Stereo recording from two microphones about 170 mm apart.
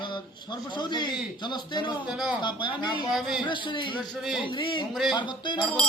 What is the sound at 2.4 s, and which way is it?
Speech, 30° left (ahead or behind).